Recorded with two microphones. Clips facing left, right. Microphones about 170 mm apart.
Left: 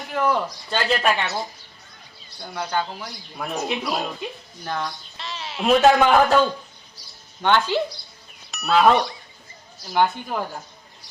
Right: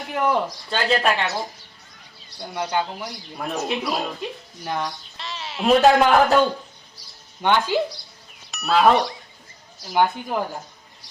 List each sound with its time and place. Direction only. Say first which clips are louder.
0.1 s speech: even; 10° right (ahead or behind)
0.7 s speech: even; centre (ahead or behind)
2.6 s a man's voice: right 1 dB; 15° right (ahead or behind)
3.5 s speech: right 1 dB; 5° right (ahead or behind)
4.6 s a man's voice: right 1 dB; 15° right (ahead or behind)
5.1 s a man's voice: even; centre (ahead or behind)
7.4 s a man's voice: even; 10° right (ahead or behind)
8.4 s a man's voice: even; centre (ahead or behind)